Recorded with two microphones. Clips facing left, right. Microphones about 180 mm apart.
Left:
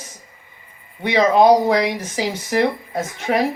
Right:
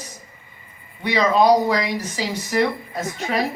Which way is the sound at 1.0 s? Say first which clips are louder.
Left 3 dB; 55° left (ahead or behind).